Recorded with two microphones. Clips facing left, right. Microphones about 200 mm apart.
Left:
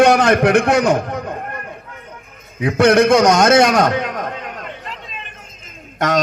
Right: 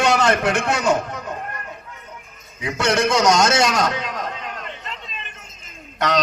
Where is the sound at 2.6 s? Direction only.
55° left (ahead or behind).